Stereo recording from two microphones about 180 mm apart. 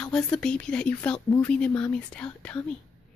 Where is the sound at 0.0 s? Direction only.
5° left (ahead or behind).